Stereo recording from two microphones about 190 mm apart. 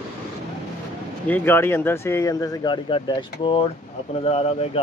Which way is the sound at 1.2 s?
10° left (ahead or behind).